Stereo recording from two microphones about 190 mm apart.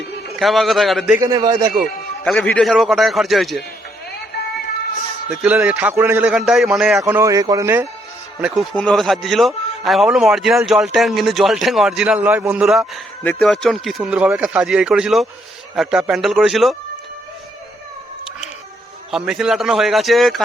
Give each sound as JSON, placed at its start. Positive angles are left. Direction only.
{"t": 0.3, "sound": "speech", "side_deg": 0}
{"t": 1.2, "sound": "a man's voice", "side_deg": -20}
{"t": 2.2, "sound": "speech", "side_deg": 5}
{"t": 5.3, "sound": "speech", "side_deg": -5}
{"t": 7.0, "sound": "a man's voice", "side_deg": -15}
{"t": 8.4, "sound": "speech", "side_deg": 0}
{"t": 19.1, "sound": "speech", "side_deg": -5}